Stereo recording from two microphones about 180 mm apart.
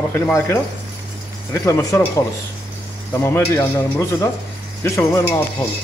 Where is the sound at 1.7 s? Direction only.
15° left (ahead or behind).